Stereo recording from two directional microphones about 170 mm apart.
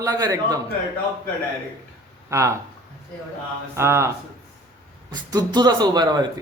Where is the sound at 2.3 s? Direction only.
15° right (ahead or behind).